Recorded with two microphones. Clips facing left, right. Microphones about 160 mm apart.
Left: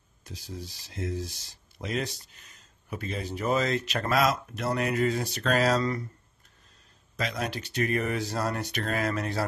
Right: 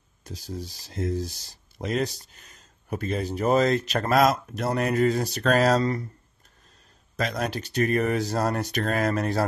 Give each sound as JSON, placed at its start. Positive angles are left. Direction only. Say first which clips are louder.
{"t": 0.2, "sound": "speech", "louder": "right 5 dB", "side_deg": -40}
{"t": 7.2, "sound": "speech", "louder": "right 4 dB", "side_deg": -45}